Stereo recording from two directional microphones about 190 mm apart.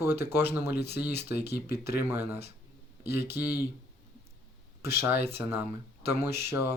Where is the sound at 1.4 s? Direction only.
60° left (ahead or behind).